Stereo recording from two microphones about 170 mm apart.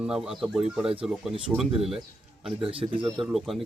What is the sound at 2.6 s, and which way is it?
Speech, 35° right (ahead or behind).